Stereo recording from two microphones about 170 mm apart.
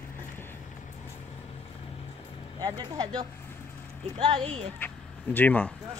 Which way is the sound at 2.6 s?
20° right (ahead or behind).